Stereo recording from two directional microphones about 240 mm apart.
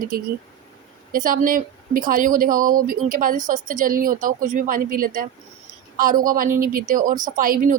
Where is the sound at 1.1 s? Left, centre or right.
Right.